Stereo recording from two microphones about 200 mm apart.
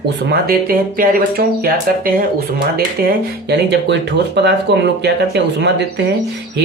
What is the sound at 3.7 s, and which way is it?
Speech, 60° right (ahead or behind).